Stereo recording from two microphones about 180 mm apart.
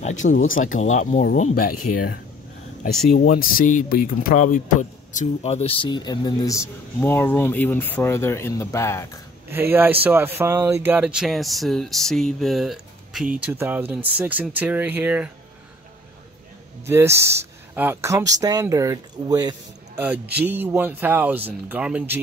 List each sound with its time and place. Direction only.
0.0 s speech: 45° left (ahead or behind)
1.5 s speech: 55° left (ahead or behind); by 9.2 s 15° left (ahead or behind)
9.5 s speech: 10° right (ahead or behind)
16.8 s speech: 15° right (ahead or behind)
20.0 s speech: 10° right (ahead or behind)